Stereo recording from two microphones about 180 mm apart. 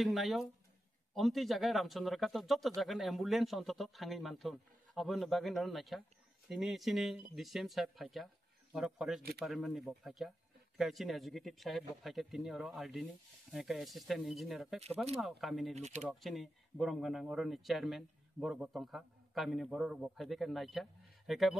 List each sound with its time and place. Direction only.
0.0 s speech: centre (ahead or behind)
15.7 s speech: 40° right (ahead or behind)
16.1 s speech: centre (ahead or behind)